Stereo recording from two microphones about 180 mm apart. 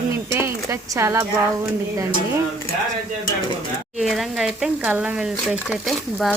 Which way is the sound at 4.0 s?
Centre (ahead or behind).